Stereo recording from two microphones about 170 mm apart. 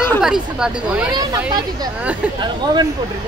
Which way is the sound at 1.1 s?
20° right (ahead or behind).